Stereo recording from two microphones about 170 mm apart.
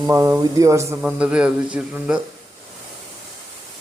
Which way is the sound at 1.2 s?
5° right (ahead or behind).